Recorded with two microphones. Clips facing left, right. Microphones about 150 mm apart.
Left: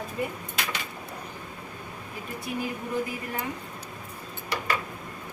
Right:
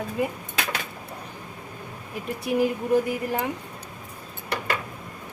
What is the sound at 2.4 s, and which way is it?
Speech, 80° right.